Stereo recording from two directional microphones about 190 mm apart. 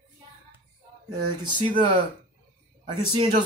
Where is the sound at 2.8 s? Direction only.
30° right (ahead or behind).